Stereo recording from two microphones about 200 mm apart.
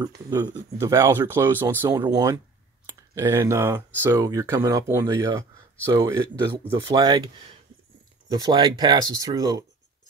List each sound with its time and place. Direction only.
0.0 s speech: 20° right (ahead or behind)
8.3 s speech: 20° right (ahead or behind)